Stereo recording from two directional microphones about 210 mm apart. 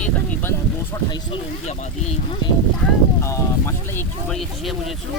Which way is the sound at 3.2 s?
15° left (ahead or behind).